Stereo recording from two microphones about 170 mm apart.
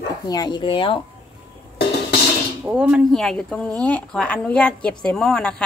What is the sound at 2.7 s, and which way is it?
Speech, 5° right (ahead or behind).